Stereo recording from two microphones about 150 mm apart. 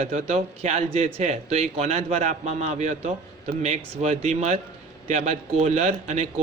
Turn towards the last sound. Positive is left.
turn(degrees=-50)  # may be behind; listen again after turning